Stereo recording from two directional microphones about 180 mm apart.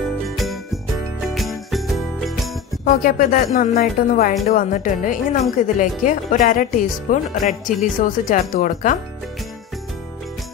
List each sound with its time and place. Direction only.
0.4 s jingle bell: centre (ahead or behind)
2.8 s speech: 50° left (ahead or behind)